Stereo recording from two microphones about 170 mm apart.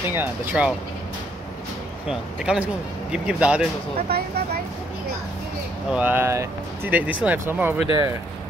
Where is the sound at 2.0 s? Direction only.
5° right (ahead or behind).